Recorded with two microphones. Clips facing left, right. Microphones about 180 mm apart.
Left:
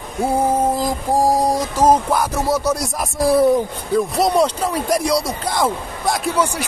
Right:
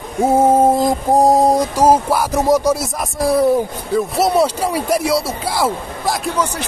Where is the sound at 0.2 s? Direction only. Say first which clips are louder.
Right 5 dB; 25° right (ahead or behind).